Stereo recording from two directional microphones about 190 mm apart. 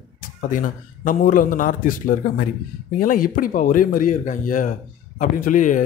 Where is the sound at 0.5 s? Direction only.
45° left (ahead or behind).